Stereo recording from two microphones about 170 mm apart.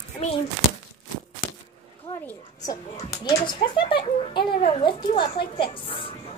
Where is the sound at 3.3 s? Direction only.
30° left (ahead or behind).